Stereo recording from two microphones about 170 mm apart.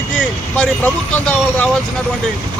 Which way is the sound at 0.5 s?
5° left (ahead or behind).